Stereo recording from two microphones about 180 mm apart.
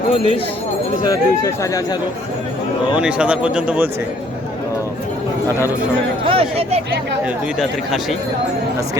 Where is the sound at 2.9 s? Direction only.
5° right (ahead or behind).